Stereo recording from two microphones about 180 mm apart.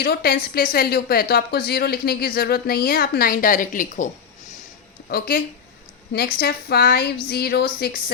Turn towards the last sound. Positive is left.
turn(degrees=60)  # may be behind; listen again after turning